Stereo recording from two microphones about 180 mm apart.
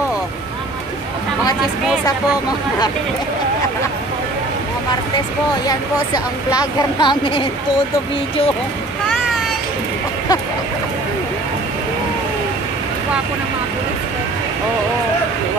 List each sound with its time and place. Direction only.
5.7 s speech: 20° left (ahead or behind)